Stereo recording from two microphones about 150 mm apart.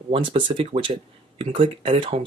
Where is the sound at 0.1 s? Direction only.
35° right (ahead or behind).